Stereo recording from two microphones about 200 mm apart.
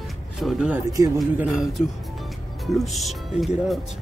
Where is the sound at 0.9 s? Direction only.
15° right (ahead or behind).